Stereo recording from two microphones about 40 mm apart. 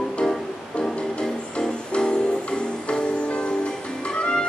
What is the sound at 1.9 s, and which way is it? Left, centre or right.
Music, left.